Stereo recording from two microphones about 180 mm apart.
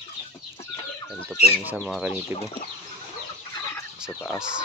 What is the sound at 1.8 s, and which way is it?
Speech, 5° right (ahead or behind).